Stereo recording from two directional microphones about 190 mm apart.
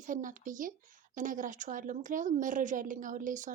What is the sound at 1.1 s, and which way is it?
A woman's voice, 45° right (ahead or behind).